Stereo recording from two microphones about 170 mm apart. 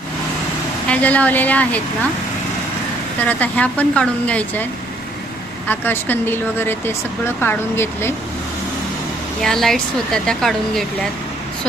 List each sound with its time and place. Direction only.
0.9 s speech: 10° left (ahead or behind)
3.2 s speech: 10° left (ahead or behind)
5.6 s speech: 10° left (ahead or behind)
9.4 s speech: centre (ahead or behind)